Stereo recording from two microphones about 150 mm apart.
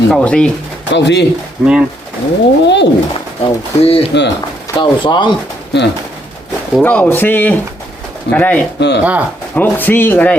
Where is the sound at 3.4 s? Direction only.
40° left (ahead or behind).